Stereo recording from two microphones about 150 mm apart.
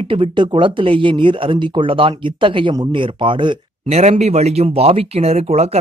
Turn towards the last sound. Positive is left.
turn(degrees=-45)  # may be behind; listen again after turning